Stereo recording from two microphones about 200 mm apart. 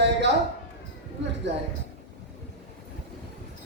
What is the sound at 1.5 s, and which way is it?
Speech, 60° right (ahead or behind).